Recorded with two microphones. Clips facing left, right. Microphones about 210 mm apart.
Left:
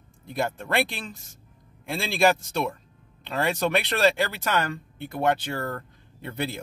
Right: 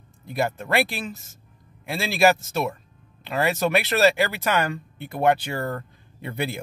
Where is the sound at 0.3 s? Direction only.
5° right (ahead or behind).